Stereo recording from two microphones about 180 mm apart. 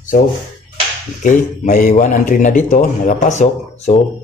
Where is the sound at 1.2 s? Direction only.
45° left (ahead or behind).